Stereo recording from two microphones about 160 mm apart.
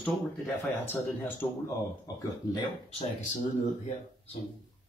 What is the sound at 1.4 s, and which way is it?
Speech, 15° left (ahead or behind).